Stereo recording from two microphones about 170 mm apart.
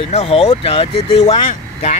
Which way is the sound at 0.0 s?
35° left (ahead or behind).